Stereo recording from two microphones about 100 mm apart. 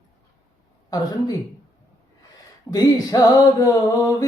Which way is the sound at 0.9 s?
40° left (ahead or behind).